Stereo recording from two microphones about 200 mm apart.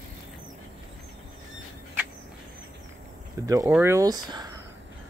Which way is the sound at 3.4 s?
15° right (ahead or behind).